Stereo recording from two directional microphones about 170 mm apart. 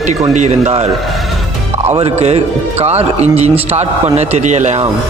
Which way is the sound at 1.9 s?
40° right (ahead or behind).